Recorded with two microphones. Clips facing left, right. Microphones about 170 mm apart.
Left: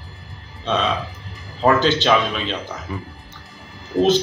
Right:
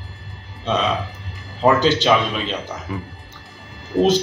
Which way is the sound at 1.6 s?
5° right (ahead or behind).